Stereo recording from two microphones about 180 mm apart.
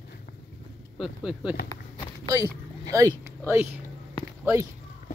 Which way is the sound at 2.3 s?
20° right (ahead or behind).